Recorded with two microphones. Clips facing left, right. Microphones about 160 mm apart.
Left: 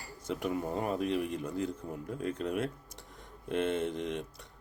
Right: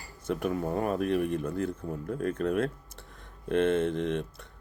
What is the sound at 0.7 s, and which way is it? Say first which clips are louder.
Speech: right 4 dB; 65° right (ahead or behind).